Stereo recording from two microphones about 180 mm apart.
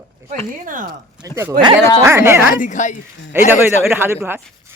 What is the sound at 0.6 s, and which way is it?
Speech, 50° right (ahead or behind).